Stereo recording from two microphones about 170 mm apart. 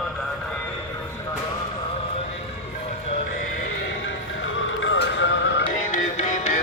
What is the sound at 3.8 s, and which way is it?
Music, 90° left.